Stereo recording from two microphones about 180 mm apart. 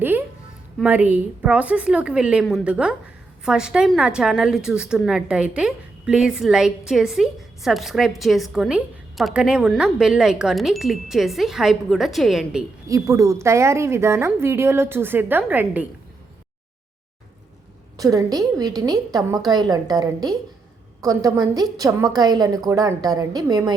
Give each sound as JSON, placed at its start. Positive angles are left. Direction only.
{"t": 0.8, "sound": "a woman's voice", "side_deg": -10}
{"t": 12.9, "sound": "a woman's voice", "side_deg": -15}
{"t": 17.9, "sound": "a woman's voice", "side_deg": -20}